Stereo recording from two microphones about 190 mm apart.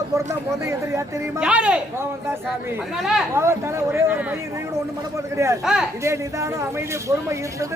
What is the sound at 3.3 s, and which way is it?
Speech, 15° right (ahead or behind).